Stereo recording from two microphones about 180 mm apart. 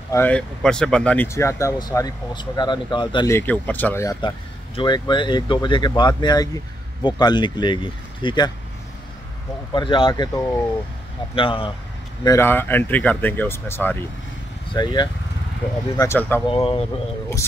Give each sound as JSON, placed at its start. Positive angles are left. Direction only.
{"t": 0.1, "sound": "speech", "side_deg": 10}
{"t": 3.3, "sound": "speech", "side_deg": 10}
{"t": 9.8, "sound": "speech", "side_deg": 30}
{"t": 12.3, "sound": "speech", "side_deg": 15}
{"t": 14.7, "sound": "speech", "side_deg": 25}
{"t": 16.0, "sound": "speech", "side_deg": 15}
{"t": 16.4, "sound": "speech", "side_deg": 30}